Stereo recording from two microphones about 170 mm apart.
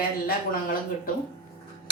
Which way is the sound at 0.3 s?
55° left (ahead or behind).